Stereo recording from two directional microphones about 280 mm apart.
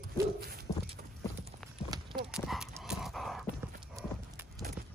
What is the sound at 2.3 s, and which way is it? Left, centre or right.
Clip-clop, centre.